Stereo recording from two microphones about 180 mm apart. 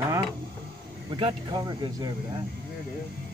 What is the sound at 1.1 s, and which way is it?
Speech, 25° right (ahead or behind).